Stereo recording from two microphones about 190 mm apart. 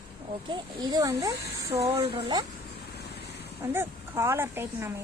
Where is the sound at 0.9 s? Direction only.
20° right (ahead or behind).